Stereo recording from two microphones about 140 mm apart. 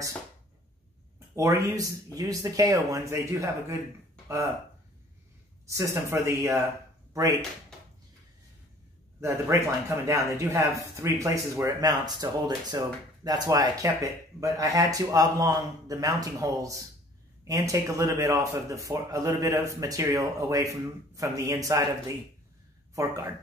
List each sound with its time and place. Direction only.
1.3 s speech: 20° right (ahead or behind)
5.7 s speech: 20° right (ahead or behind)
9.2 s speech: 20° right (ahead or behind)